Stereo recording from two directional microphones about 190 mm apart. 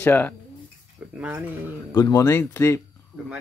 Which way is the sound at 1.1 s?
10° right (ahead or behind).